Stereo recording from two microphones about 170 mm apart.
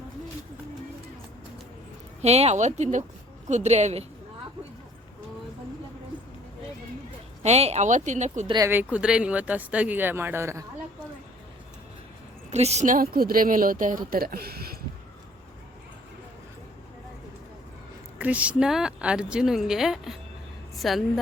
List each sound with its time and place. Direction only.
2.2 s speech: 40° right (ahead or behind)
7.4 s speech: 40° right (ahead or behind)
8.4 s speech: 25° right (ahead or behind)
8.7 s speech: 10° right (ahead or behind)
12.5 s speech: 40° right (ahead or behind); by 14.8 s 65° right (ahead or behind)
18.2 s speech: 10° right (ahead or behind)